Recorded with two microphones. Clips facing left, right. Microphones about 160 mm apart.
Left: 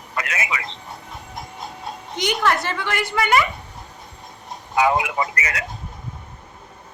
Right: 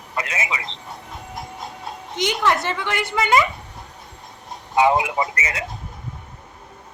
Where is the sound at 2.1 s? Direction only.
20° right (ahead or behind).